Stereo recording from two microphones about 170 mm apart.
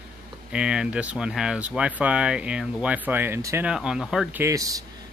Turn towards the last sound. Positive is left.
turn(degrees=-20)  # may be behind; listen again after turning